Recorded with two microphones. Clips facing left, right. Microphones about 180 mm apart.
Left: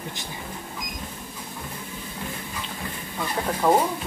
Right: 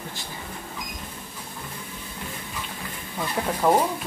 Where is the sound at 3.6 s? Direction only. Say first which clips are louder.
Even; 5° right (ahead or behind).